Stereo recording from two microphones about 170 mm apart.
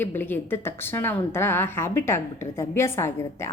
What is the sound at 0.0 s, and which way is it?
A woman's voice, 10° left (ahead or behind).